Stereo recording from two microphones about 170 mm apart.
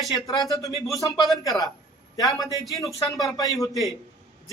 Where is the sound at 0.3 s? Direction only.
20° left (ahead or behind).